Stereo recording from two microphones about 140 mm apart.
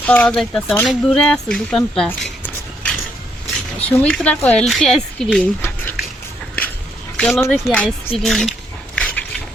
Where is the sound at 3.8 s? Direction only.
10° left (ahead or behind).